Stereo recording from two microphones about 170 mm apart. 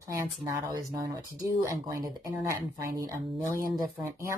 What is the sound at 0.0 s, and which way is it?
Speech, 20° right (ahead or behind).